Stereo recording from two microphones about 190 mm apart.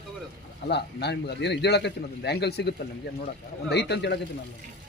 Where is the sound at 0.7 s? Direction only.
60° left (ahead or behind).